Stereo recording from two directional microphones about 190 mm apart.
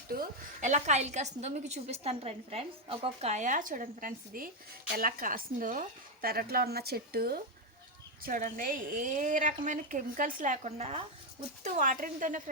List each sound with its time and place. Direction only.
0.1 s a woman's voice: 45° right (ahead or behind)